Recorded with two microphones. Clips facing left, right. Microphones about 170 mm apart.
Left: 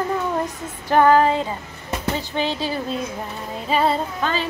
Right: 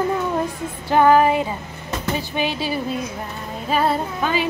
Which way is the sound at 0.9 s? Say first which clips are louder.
Right 1 dB; 15° right (ahead or behind).